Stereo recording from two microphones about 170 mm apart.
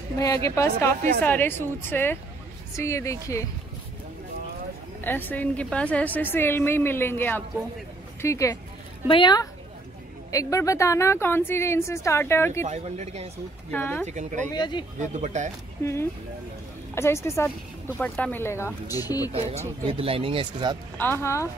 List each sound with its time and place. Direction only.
0.2 s a woman's voice: 15° left (ahead or behind)
0.7 s speech: 60° right (ahead or behind)
1.2 s a woman's voice: 10° left (ahead or behind)
5.0 s a woman's voice: 10° left (ahead or behind)
9.0 s a woman's voice: 30° left (ahead or behind)
12.6 s speech: 40° right (ahead or behind)
13.7 s a woman's voice: 10° left (ahead or behind)
14.0 s speech: 45° right (ahead or behind)
14.5 s speech: 25° left (ahead or behind)
15.0 s speech: 45° right (ahead or behind)
15.8 s a woman's voice: 15° left (ahead or behind)
19.3 s speech: 40° right (ahead or behind)
21.0 s a woman's voice: 15° left (ahead or behind)